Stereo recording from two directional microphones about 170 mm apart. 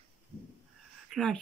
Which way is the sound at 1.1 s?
Centre (ahead or behind).